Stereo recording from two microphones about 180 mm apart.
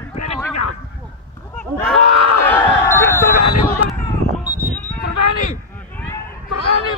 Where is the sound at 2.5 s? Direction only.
10° left (ahead or behind).